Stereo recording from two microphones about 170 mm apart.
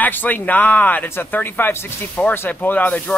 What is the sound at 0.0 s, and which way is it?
Speech, 10° left (ahead or behind).